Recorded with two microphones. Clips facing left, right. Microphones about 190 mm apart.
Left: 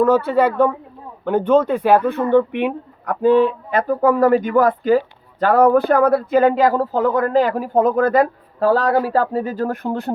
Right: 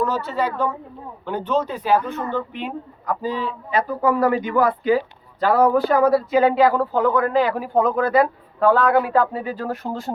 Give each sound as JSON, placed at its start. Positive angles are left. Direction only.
{"t": 0.0, "sound": "speech", "side_deg": 55}